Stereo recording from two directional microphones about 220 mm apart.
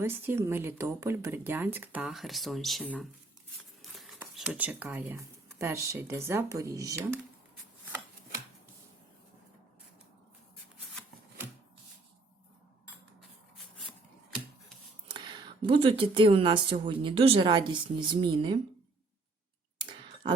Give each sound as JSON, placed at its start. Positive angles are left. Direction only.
{"t": 0.0, "sound": "speech", "side_deg": -10}
{"t": 15.0, "sound": "speech", "side_deg": -20}
{"t": 19.8, "sound": "clicking", "side_deg": -20}